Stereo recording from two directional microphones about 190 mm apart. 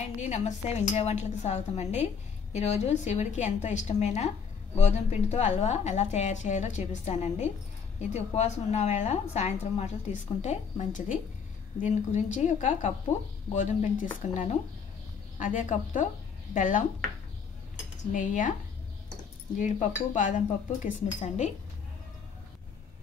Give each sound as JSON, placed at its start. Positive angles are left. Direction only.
{"t": 0.0, "sound": "a woman's voice", "side_deg": 40}
{"t": 18.1, "sound": "a woman's voice", "side_deg": 45}
{"t": 19.5, "sound": "a woman's voice", "side_deg": 40}